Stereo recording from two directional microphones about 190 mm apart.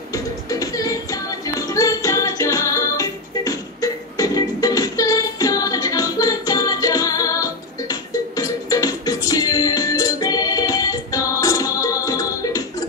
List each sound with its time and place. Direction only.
0.1 s music: 20° left (ahead or behind)